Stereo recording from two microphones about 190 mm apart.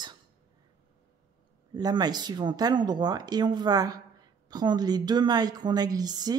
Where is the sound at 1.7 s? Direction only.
20° right (ahead or behind).